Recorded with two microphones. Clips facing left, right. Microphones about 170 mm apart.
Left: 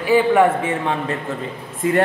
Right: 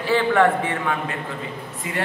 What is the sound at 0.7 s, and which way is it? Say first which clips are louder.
Speech: left 4 dB; 25° left (ahead or behind).